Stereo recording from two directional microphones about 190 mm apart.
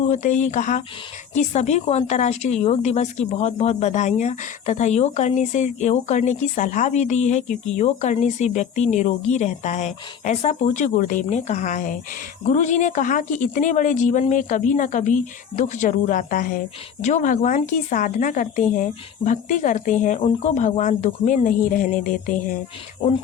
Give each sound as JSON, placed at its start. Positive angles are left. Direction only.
{"t": 0.1, "sound": "a woman's voice", "side_deg": 40}